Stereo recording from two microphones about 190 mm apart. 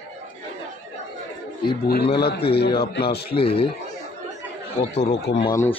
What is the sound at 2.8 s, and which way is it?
Speech, 55° left (ahead or behind).